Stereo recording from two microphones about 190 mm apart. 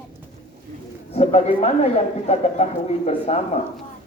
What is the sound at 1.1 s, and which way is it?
Speech, 35° left (ahead or behind).